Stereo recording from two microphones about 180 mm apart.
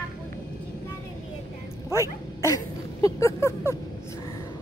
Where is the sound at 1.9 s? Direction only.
15° left (ahead or behind).